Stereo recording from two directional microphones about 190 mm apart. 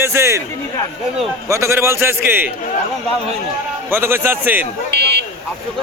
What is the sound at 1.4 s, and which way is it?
A man's voice, 15° right (ahead or behind).